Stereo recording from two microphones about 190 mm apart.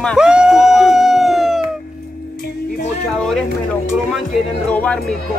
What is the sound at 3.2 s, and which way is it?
Speech, 5° left (ahead or behind).